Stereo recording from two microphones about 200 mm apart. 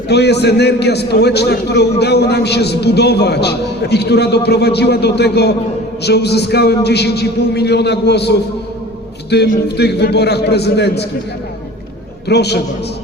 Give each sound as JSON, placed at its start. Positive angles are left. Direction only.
{"t": 0.1, "sound": "a man's voice", "side_deg": 55}
{"t": 12.3, "sound": "a man's voice", "side_deg": 55}